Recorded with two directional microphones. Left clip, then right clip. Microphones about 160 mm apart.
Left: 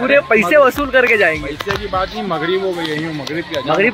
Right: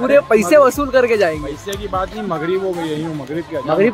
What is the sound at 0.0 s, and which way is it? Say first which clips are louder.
Speech: even; 15° right (ahead or behind).